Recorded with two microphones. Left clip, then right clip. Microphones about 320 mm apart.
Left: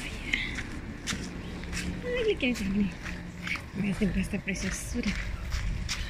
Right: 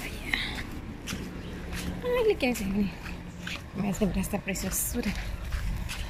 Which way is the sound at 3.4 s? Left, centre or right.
Right.